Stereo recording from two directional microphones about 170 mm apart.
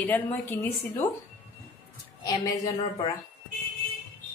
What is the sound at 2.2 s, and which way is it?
Speech, 25° left (ahead or behind).